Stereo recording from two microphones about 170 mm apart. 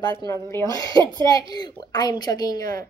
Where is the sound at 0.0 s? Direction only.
25° left (ahead or behind).